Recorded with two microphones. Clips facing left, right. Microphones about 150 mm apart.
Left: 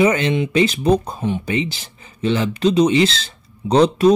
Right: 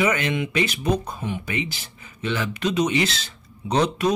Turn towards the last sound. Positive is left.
turn(degrees=30)  # may be behind; listen again after turning